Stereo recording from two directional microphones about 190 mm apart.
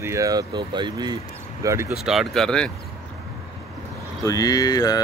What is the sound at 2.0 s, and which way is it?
Speech, centre (ahead or behind).